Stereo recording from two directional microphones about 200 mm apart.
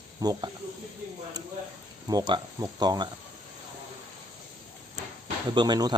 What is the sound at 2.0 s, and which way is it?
A man's voice, 20° right (ahead or behind).